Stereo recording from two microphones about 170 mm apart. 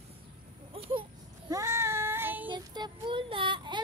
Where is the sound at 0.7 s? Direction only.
35° right (ahead or behind).